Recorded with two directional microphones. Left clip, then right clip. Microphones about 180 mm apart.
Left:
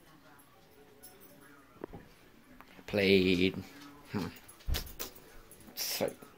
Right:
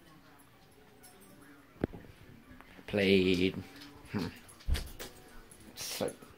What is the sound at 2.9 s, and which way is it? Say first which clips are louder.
Speech: left 1 dB; 15° left (ahead or behind).